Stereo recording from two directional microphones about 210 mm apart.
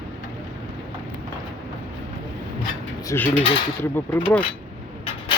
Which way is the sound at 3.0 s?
10° left (ahead or behind).